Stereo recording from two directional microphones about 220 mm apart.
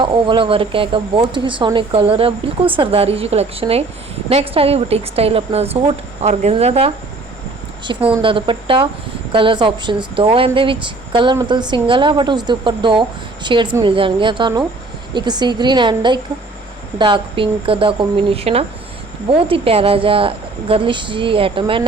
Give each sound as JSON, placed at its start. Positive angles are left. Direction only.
{"t": 0.0, "sound": "speech", "side_deg": -20}